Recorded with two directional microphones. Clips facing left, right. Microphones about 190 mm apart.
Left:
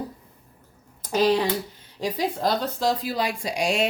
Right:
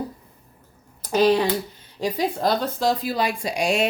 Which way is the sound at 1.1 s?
60° right (ahead or behind).